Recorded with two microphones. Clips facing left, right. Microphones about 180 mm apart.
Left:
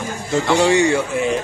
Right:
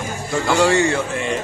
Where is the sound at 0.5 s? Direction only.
20° left (ahead or behind).